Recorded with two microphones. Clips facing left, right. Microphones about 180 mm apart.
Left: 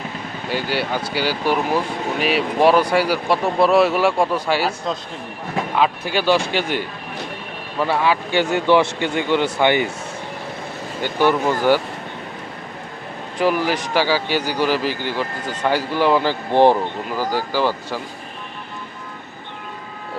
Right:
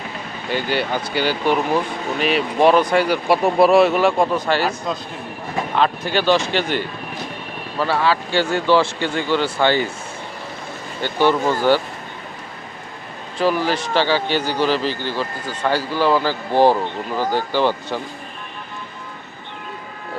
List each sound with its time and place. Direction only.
0.5 s speech: 5° left (ahead or behind)
3.2 s speech: 10° right (ahead or behind); by 4.7 s 10° left (ahead or behind)
5.7 s speech: 5° left (ahead or behind)
11.0 s speech: 10° left (ahead or behind)
13.4 s speech: 15° left (ahead or behind)
17.2 s speech: 5° left (ahead or behind)